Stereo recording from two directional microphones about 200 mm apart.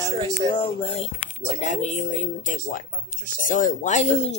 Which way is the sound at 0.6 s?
25° left (ahead or behind).